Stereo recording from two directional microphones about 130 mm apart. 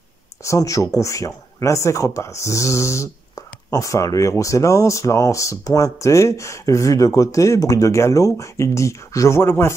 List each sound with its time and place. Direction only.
0.4 s speech: 25° left (ahead or behind)